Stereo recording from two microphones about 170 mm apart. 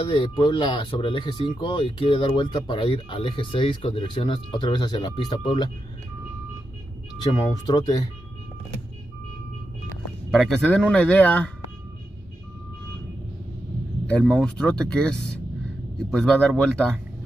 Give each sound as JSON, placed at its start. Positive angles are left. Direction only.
{"t": 0.0, "sound": "speech", "side_deg": 30}
{"t": 7.3, "sound": "speech", "side_deg": 25}
{"t": 10.3, "sound": "speech", "side_deg": 0}
{"t": 14.0, "sound": "speech", "side_deg": 5}